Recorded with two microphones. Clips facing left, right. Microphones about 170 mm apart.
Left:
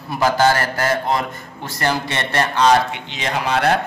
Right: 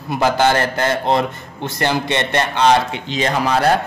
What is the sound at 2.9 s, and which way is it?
Speech, 35° right (ahead or behind).